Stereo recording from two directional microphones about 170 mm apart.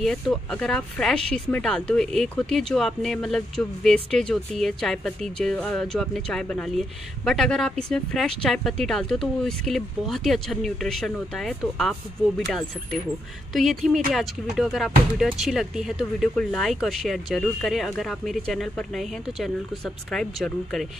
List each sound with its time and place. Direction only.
0.0 s speech: 5° left (ahead or behind)